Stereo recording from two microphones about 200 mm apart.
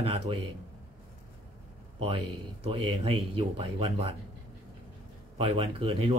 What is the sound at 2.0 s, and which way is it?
A man's voice, 25° right (ahead or behind).